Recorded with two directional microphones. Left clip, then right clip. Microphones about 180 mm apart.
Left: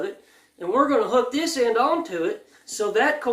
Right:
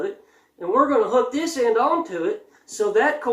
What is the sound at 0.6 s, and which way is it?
Speech, 35° left (ahead or behind).